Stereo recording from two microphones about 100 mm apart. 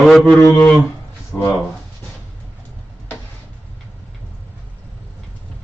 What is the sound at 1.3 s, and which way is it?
Speech, 10° left (ahead or behind).